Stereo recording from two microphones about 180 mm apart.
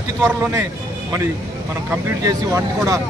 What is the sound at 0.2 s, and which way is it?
Speech, 15° right (ahead or behind).